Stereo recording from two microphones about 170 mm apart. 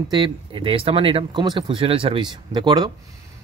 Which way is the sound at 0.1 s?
30° right (ahead or behind).